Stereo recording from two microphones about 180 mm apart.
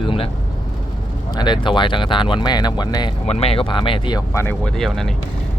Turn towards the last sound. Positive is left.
turn(degrees=0)  # may be behind; listen again after turning